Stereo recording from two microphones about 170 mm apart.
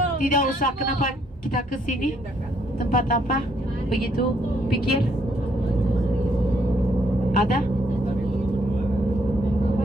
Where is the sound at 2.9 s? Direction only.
55° left (ahead or behind).